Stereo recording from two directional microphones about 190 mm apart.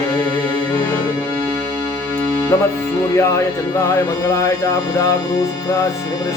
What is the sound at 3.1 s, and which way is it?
Mantra, 15° left (ahead or behind).